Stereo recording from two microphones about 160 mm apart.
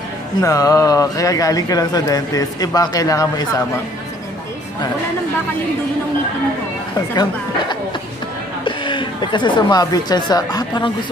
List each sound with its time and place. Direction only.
0.4 s speech: 20° left (ahead or behind)
8.6 s a woman's voice: 30° left (ahead or behind)